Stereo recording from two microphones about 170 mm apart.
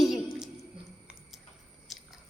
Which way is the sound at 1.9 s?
Centre (ahead or behind).